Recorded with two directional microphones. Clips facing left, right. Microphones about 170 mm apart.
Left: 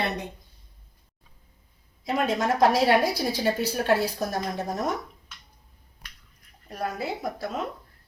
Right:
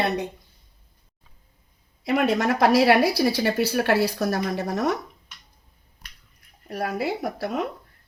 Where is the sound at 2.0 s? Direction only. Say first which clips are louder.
Right 4 dB; 70° right (ahead or behind).